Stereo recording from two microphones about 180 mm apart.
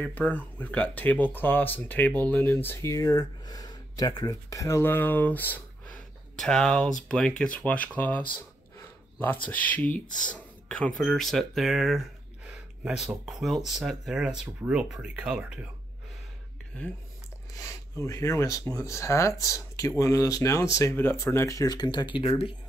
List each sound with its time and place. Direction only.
0.0 s speech: 10° left (ahead or behind)
8.7 s a sound: 10° left (ahead or behind)
10.3 s speech: 5° left (ahead or behind)
17.6 s speech: 15° left (ahead or behind)